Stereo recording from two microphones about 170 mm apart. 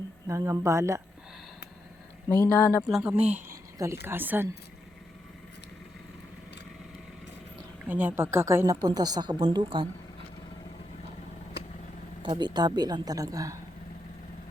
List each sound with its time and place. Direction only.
0.3 s speech: 15° right (ahead or behind)
2.3 s speech: 10° left (ahead or behind)
2.9 s speech: 5° right (ahead or behind)
3.5 s a sound: 15° right (ahead or behind)
4.0 s speech: 10° right (ahead or behind)
7.9 s speech: 10° right (ahead or behind); by 9.8 s 25° right (ahead or behind)
12.2 s speech: 25° right (ahead or behind)